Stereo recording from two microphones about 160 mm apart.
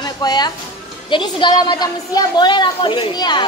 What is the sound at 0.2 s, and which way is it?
A woman's voice, 25° left (ahead or behind).